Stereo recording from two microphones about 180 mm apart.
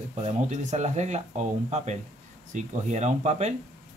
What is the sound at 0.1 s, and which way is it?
Speech, 40° right (ahead or behind).